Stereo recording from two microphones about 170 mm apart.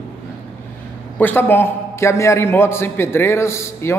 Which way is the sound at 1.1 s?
10° left (ahead or behind).